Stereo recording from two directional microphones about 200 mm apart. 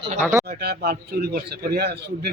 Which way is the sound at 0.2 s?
10° right (ahead or behind).